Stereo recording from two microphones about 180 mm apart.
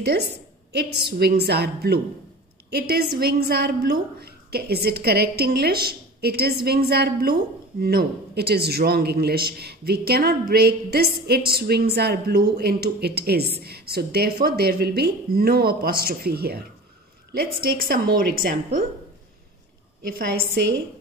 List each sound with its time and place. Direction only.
0.7 s a man's voice: 65° right (ahead or behind); by 18.9 s 50° right (ahead or behind)
20.1 s a man's voice: 55° right (ahead or behind)